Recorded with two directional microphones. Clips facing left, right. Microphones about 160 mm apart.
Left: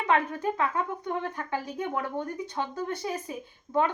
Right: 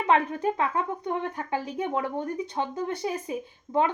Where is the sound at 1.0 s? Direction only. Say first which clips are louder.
Right 2 dB; 20° right (ahead or behind).